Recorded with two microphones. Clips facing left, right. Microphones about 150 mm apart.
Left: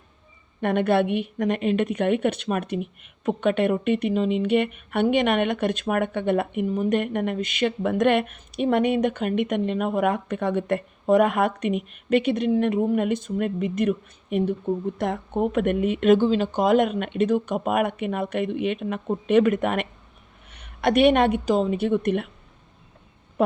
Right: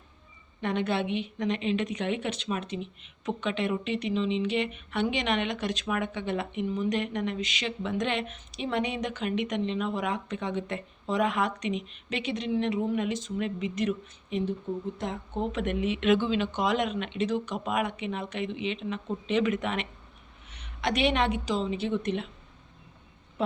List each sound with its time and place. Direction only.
0.6 s a woman's voice: 55° left (ahead or behind)